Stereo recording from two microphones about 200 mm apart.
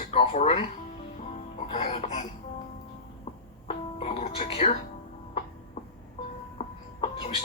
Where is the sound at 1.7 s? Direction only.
35° left (ahead or behind).